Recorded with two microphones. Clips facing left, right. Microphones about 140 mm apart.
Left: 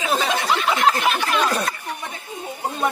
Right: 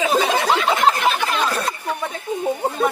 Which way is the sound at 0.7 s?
25° right (ahead or behind).